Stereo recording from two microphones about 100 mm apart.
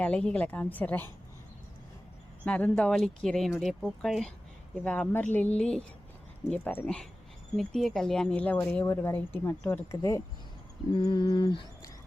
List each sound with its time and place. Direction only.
0.0 s a woman's voice: 10° left (ahead or behind)
2.4 s a woman's voice: 15° left (ahead or behind)
4.8 s a woman's voice: 15° left (ahead or behind)
6.8 s a woman's voice: 5° left (ahead or behind)
8.8 s speech: 25° left (ahead or behind)
10.9 s a sound: 50° left (ahead or behind)